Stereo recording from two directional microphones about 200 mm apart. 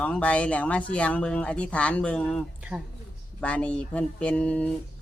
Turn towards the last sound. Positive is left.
turn(degrees=5)  # may be behind; listen again after turning